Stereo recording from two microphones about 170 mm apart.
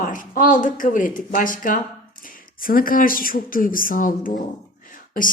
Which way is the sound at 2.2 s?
55° left (ahead or behind).